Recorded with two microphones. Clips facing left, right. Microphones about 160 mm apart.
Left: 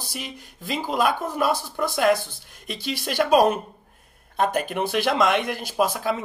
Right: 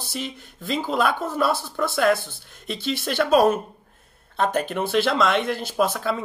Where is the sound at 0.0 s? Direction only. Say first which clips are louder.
Right 4 dB; 15° left (ahead or behind).